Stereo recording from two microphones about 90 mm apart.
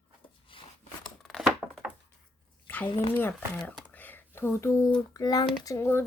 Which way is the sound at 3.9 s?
20° left (ahead or behind).